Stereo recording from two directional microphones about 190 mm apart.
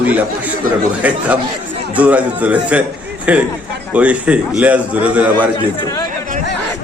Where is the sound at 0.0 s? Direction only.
10° right (ahead or behind).